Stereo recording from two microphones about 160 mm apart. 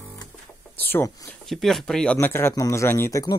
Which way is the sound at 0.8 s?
10° left (ahead or behind).